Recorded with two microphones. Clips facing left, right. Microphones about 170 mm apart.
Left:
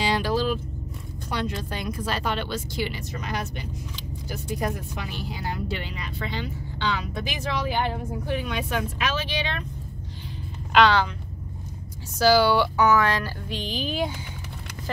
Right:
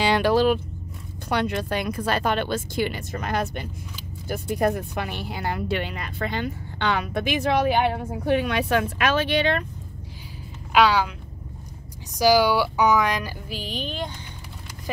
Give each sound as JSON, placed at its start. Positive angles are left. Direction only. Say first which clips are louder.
{"t": 0.0, "sound": "vehicle", "louder": "right 5 dB", "side_deg": -65}
{"t": 1.3, "sound": "speech", "louder": "right 5 dB", "side_deg": -65}
{"t": 10.7, "sound": "speech", "louder": "even", "side_deg": -10}
{"t": 12.2, "sound": "speech", "louder": "even", "side_deg": -10}